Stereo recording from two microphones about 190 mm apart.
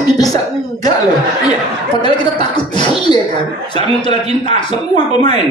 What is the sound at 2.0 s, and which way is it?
Speech, 25° left (ahead or behind).